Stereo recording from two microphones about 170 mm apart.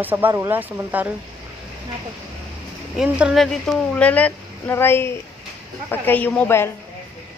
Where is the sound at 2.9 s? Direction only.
5° right (ahead or behind); by 6.6 s 10° left (ahead or behind).